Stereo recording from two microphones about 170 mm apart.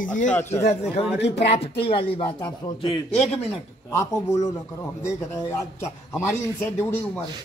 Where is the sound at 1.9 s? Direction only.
30° left (ahead or behind).